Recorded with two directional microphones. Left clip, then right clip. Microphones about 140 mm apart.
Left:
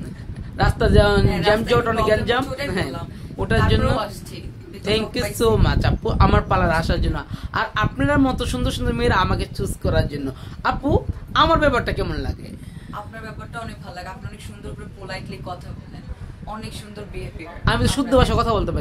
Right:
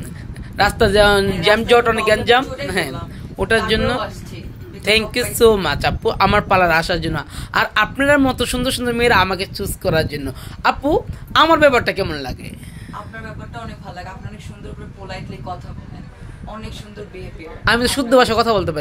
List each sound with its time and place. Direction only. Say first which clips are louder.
0.6 s speech: right 5 dB; 30° right (ahead or behind)
17.6 s speech: right 5 dB; 20° right (ahead or behind)